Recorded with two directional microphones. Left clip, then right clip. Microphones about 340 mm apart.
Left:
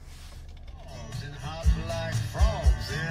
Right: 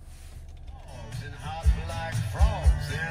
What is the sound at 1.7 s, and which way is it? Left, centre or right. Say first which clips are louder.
Music: left 2 dB; centre.